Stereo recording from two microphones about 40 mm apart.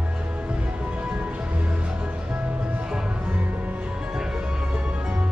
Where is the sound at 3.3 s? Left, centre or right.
Right.